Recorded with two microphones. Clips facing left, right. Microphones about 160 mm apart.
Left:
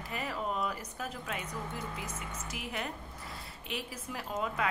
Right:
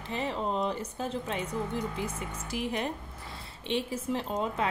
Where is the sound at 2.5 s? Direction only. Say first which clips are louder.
Right 8 dB; 30° right (ahead or behind).